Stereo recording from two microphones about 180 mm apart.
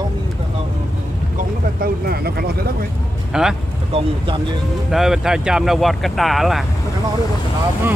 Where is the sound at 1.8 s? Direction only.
60° right (ahead or behind).